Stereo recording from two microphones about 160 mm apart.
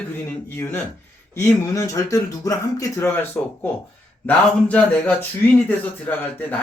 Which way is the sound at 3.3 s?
10° left (ahead or behind).